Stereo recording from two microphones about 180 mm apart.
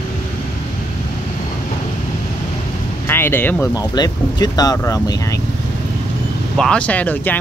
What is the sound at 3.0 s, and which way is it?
Speech, 10° left (ahead or behind).